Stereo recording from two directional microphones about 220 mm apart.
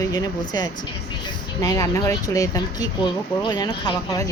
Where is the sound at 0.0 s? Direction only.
15° left (ahead or behind).